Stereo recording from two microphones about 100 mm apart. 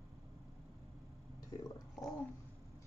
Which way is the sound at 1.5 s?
40° left (ahead or behind).